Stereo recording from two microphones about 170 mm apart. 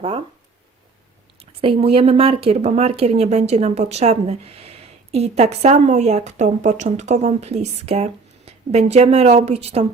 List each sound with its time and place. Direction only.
1.6 s a woman's voice: 35° right (ahead or behind)